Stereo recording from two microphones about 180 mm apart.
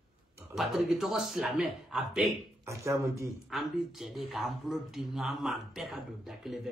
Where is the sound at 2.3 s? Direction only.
15° right (ahead or behind).